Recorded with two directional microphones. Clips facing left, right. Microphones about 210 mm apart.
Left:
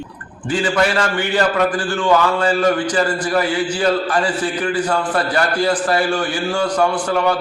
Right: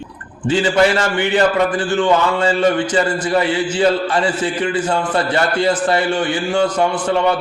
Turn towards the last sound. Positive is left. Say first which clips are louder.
# right 1 dB
turn(degrees=-25)  # may be behind; listen again after turning